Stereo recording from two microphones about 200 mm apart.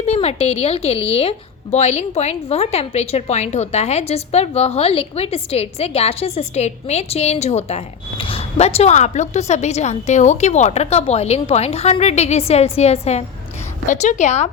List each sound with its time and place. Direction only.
0.0 s speech: 30° left (ahead or behind)